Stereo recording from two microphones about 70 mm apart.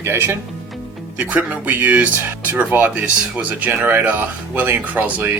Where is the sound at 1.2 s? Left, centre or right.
Right.